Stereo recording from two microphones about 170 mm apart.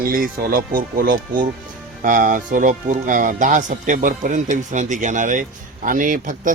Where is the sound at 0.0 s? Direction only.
55° right (ahead or behind).